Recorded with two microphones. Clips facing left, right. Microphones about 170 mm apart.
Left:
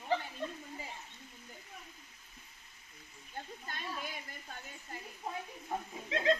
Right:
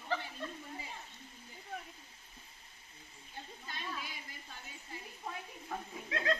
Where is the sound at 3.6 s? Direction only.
50° left (ahead or behind).